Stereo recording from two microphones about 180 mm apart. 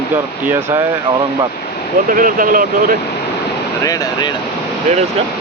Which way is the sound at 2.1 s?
50° right (ahead or behind).